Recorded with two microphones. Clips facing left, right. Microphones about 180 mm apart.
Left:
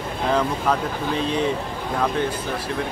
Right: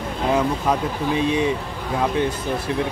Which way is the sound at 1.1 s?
15° right (ahead or behind).